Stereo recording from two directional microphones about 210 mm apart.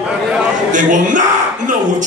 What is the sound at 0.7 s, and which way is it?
Speech, 35° right (ahead or behind).